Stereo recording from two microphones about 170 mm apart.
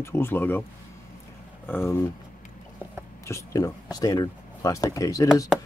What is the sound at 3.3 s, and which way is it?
Speech, 15° left (ahead or behind).